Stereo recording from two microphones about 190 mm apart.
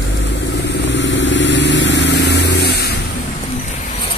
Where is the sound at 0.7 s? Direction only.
65° left (ahead or behind).